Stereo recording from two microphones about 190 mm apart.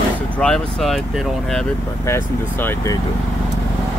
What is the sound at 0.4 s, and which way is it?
Speech, 5° left (ahead or behind).